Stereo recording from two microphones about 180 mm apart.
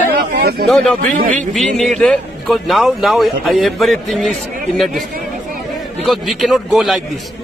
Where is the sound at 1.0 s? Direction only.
45° right (ahead or behind).